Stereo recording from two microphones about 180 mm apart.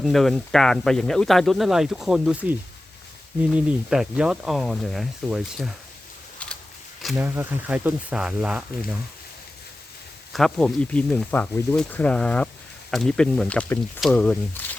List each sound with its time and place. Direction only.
0.0 s speech: centre (ahead or behind)
7.0 s speech: centre (ahead or behind)
7.3 s speech: 10° right (ahead or behind)
10.3 s speech: 5° left (ahead or behind)